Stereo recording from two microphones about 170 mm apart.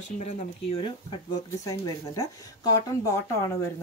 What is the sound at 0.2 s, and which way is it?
Speech, 40° left (ahead or behind).